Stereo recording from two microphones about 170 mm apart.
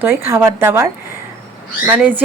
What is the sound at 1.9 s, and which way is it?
Speech, 10° right (ahead or behind).